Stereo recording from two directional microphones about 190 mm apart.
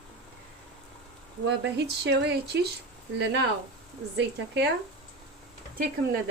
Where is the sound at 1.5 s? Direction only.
70° right (ahead or behind).